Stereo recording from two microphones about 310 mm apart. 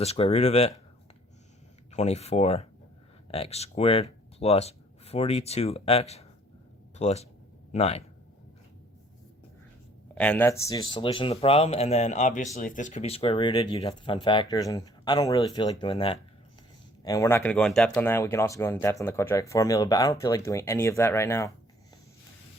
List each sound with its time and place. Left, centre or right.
0.0 s speech: centre
1.9 s speech: left
10.2 s speech: centre